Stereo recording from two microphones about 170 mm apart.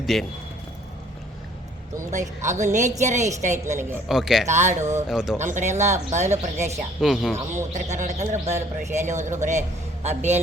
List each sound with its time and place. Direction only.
0.0 s a man's voice: centre (ahead or behind)
2.0 s speech: 45° right (ahead or behind)
4.1 s speech: centre (ahead or behind)
4.4 s speech: 45° right (ahead or behind)
5.0 s speech: 5° right (ahead or behind)
5.4 s speech: 45° right (ahead or behind)
7.0 s speech: 5° right (ahead or behind)
7.3 s speech: 40° right (ahead or behind)